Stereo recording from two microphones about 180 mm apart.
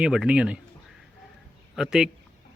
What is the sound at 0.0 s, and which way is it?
Speech, 5° right (ahead or behind).